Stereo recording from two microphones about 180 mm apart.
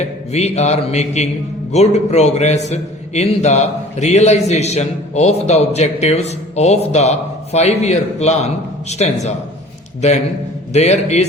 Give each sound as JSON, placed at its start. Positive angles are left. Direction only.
{"t": 0.0, "sound": "a man's voice", "side_deg": 35}
{"t": 10.7, "sound": "a man's voice", "side_deg": 40}